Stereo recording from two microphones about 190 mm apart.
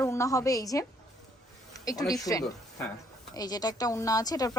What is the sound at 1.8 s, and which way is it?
A woman's voice, 20° left (ahead or behind).